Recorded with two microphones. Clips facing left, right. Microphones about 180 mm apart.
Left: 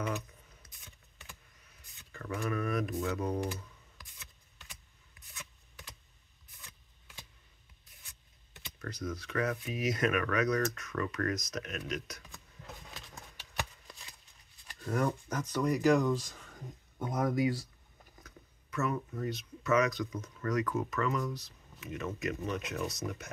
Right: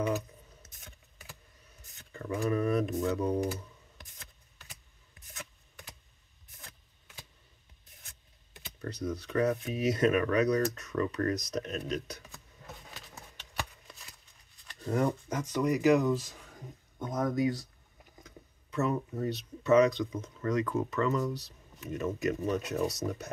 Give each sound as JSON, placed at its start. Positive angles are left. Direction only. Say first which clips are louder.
{"t": 0.7, "sound": "vehicle", "louder": "right 4 dB", "side_deg": -45}
{"t": 2.1, "sound": "speech", "louder": "right 5 dB", "side_deg": -25}
{"t": 8.8, "sound": "speech", "louder": "right 4 dB", "side_deg": -35}
{"t": 14.8, "sound": "speech", "louder": "right 3 dB", "side_deg": -25}
{"t": 15.5, "sound": "speech", "louder": "right 2 dB", "side_deg": -10}
{"t": 17.0, "sound": "speech", "louder": "right 1 dB", "side_deg": 10}
{"t": 18.2, "sound": "speech", "louder": "right 4 dB", "side_deg": -30}